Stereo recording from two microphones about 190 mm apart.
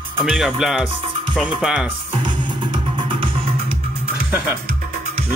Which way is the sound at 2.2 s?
25° right (ahead or behind).